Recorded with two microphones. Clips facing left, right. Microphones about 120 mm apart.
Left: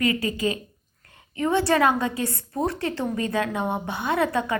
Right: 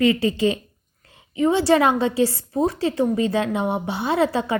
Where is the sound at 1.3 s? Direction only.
20° right (ahead or behind).